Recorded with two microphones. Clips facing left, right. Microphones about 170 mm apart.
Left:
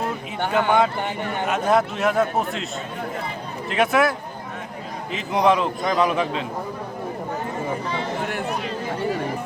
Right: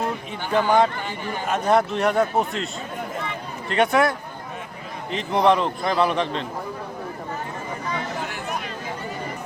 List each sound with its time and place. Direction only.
0.3 s a man's voice: 65° left (ahead or behind)
1.5 s a man's voice: centre (ahead or behind)
3.7 s a man's voice: centre (ahead or behind)
5.1 s a man's voice: centre (ahead or behind)